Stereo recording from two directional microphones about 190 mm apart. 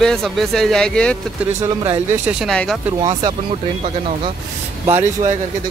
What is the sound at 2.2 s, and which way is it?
Speech, centre (ahead or behind).